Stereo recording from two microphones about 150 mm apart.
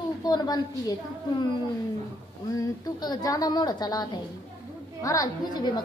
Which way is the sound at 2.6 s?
25° left (ahead or behind).